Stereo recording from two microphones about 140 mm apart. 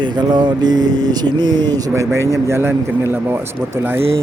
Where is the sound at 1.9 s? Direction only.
20° right (ahead or behind).